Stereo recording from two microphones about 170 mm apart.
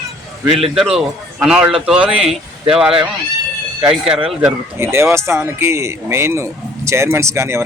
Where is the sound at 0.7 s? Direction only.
5° right (ahead or behind).